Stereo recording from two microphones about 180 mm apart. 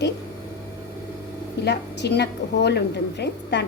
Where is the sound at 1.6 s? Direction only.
70° left (ahead or behind).